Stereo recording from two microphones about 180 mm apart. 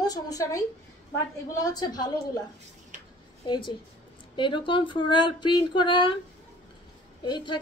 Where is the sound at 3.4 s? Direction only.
25° left (ahead or behind).